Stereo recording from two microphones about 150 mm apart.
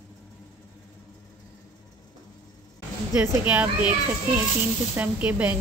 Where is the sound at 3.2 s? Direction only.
10° right (ahead or behind).